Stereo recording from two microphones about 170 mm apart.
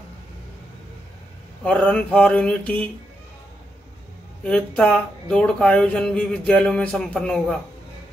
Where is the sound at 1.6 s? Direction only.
5° left (ahead or behind).